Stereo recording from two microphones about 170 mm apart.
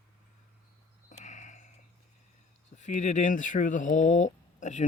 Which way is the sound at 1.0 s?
45° left (ahead or behind).